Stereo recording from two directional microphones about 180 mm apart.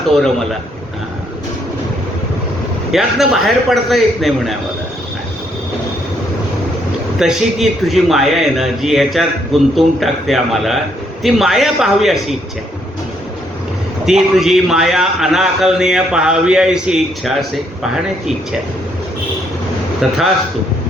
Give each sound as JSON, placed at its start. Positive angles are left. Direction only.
{"t": 0.1, "sound": "a man's voice", "side_deg": 0}
{"t": 2.9, "sound": "a man's voice", "side_deg": 0}
{"t": 7.2, "sound": "a man's voice", "side_deg": 0}
{"t": 14.0, "sound": "a man's voice", "side_deg": 0}
{"t": 20.0, "sound": "a man's voice", "side_deg": 0}